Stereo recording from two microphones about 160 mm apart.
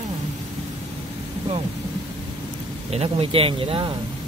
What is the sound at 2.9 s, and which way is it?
Speech, 40° right (ahead or behind).